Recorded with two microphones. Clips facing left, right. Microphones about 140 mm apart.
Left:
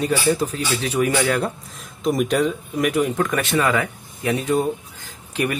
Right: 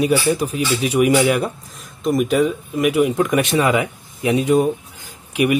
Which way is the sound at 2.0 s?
Centre (ahead or behind).